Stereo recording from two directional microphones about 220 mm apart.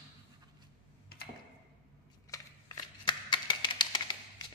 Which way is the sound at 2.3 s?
20° left (ahead or behind).